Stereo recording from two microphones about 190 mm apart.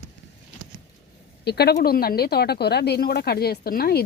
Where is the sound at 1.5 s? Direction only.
60° left (ahead or behind).